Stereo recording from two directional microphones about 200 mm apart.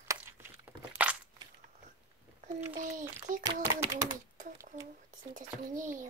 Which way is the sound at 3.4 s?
20° right (ahead or behind).